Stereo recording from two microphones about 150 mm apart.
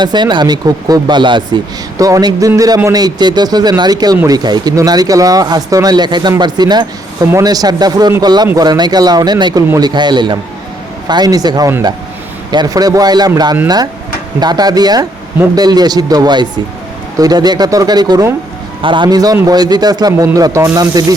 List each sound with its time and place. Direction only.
0.0 s speech: 30° right (ahead or behind)